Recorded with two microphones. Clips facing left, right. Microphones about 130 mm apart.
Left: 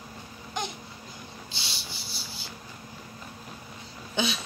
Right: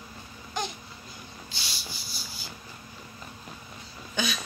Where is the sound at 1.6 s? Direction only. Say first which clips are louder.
Right 1 dB; 25° left (ahead or behind).